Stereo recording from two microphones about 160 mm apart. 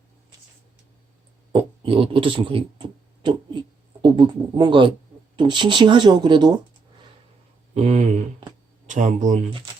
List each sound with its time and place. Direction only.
1.5 s speech: 35° right (ahead or behind)
7.7 s speech: 40° right (ahead or behind)